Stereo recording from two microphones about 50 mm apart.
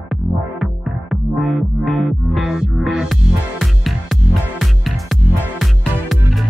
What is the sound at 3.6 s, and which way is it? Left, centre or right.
Music, centre.